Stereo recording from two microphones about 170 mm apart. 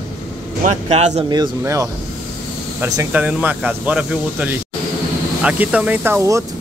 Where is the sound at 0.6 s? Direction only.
40° right (ahead or behind).